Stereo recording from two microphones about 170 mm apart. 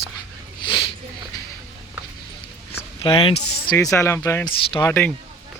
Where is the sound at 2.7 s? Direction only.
30° left (ahead or behind).